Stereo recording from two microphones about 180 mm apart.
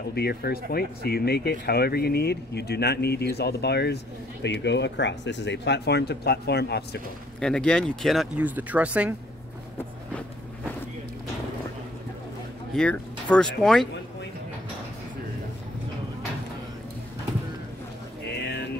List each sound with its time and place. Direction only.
0.1 s speech: 60° left (ahead or behind)
7.3 s speech: 5° left (ahead or behind)
12.7 s speech: 5° left (ahead or behind)